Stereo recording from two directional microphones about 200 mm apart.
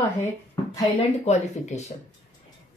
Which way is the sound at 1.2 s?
35° left (ahead or behind).